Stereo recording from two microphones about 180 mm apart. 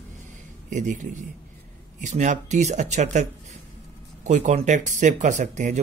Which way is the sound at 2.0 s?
40° right (ahead or behind).